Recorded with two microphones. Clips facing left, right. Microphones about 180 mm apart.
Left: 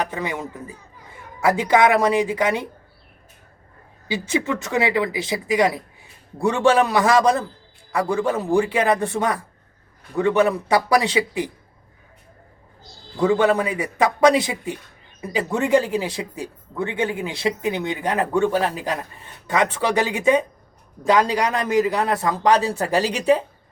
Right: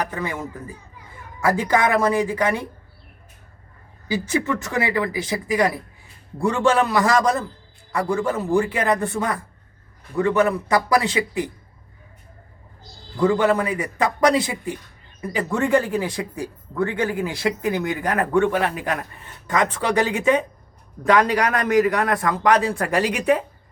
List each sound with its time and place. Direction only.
0.0 s speech: 20° left (ahead or behind)
1.5 s speech: 20° left (ahead or behind)
4.1 s speech: 25° left (ahead or behind)
13.1 s speech: 20° left (ahead or behind)